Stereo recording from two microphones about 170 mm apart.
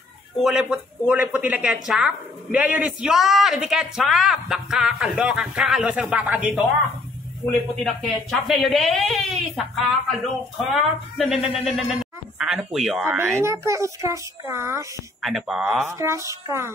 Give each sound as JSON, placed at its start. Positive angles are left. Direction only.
{"t": 0.4, "sound": "speech", "side_deg": -5}
{"t": 7.8, "sound": "speech", "side_deg": 0}
{"t": 13.0, "sound": "a child's voice", "side_deg": -15}
{"t": 15.2, "sound": "speech", "side_deg": 0}
{"t": 15.9, "sound": "a child's voice", "side_deg": -15}